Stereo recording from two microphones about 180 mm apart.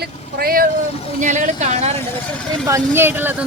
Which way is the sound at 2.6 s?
15° right (ahead or behind).